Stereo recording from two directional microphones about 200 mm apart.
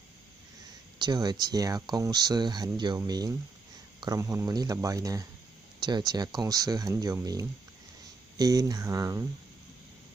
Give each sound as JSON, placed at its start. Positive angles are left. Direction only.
{"t": 0.9, "sound": "speech", "side_deg": -20}